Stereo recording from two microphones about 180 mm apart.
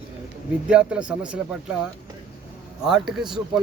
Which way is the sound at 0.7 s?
5° right (ahead or behind).